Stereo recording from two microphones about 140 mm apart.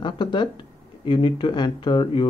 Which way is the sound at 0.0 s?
35° left (ahead or behind).